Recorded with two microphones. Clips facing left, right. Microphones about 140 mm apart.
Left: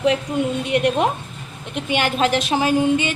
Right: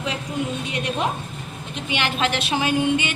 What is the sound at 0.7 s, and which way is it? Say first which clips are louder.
Speech: left 13 dB; 60° left (ahead or behind).